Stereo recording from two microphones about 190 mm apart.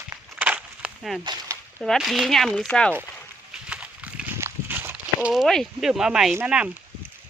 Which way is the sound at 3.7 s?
5° right (ahead or behind).